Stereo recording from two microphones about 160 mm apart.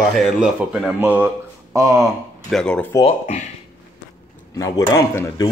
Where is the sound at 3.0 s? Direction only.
45° left (ahead or behind).